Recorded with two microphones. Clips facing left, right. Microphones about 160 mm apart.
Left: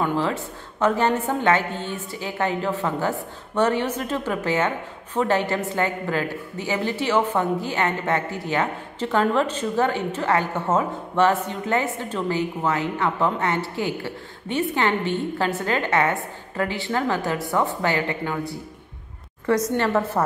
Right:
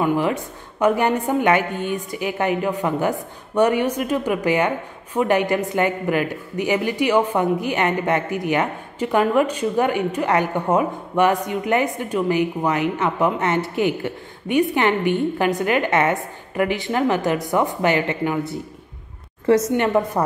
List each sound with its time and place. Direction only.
0.0 s a woman's voice: 15° right (ahead or behind)
19.8 s a woman's voice: 15° right (ahead or behind)